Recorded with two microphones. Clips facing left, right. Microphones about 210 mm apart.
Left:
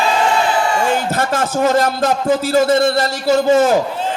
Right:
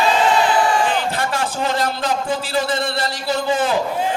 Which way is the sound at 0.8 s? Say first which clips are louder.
Left 3 dB; 45° left (ahead or behind).